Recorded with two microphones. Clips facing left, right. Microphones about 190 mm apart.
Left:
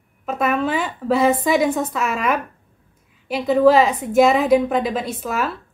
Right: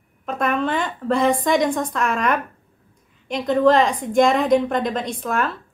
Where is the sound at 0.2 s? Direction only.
5° left (ahead or behind).